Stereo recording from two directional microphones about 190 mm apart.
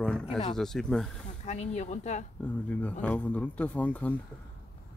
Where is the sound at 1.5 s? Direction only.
40° left (ahead or behind).